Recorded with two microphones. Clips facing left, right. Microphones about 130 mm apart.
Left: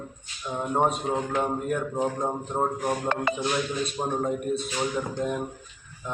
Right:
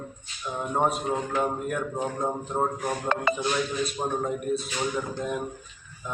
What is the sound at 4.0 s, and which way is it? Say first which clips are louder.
Speech: left 1 dB; centre (ahead or behind).